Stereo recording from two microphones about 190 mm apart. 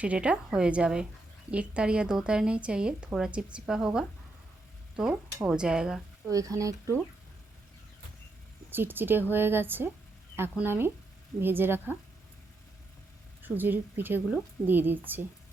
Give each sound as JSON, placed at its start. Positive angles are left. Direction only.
{"t": 0.0, "sound": "a woman's voice", "side_deg": -5}
{"t": 6.3, "sound": "a woman's voice", "side_deg": -15}
{"t": 8.7, "sound": "a woman's voice", "side_deg": -10}
{"t": 13.4, "sound": "a woman's voice", "side_deg": -10}